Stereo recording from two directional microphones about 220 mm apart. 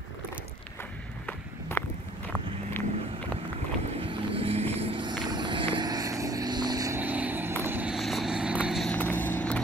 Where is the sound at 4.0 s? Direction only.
25° right (ahead or behind).